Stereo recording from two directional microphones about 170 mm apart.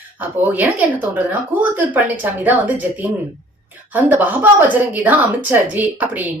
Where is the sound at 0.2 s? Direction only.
10° right (ahead or behind).